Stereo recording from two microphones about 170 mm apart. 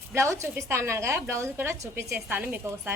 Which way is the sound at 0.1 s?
15° right (ahead or behind).